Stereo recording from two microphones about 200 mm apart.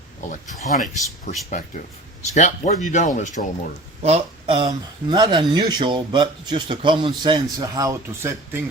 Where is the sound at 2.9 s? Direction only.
40° left (ahead or behind).